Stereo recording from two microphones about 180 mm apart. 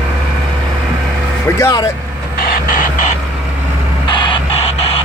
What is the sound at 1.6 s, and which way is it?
Speech, 20° left (ahead or behind).